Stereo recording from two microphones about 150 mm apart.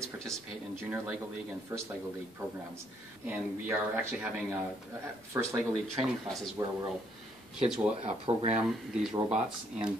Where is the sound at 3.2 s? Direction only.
10° right (ahead or behind).